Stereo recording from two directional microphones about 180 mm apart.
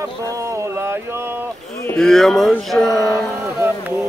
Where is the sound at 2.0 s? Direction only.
Centre (ahead or behind).